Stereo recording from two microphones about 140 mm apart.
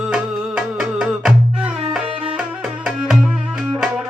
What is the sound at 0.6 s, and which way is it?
Music, 5° right (ahead or behind).